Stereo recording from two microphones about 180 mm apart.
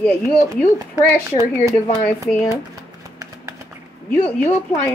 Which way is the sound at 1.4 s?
15° right (ahead or behind).